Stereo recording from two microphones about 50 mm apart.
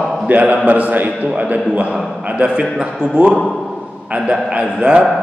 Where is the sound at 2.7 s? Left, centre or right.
Centre.